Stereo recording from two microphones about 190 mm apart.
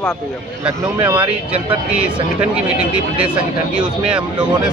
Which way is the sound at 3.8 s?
5° right (ahead or behind).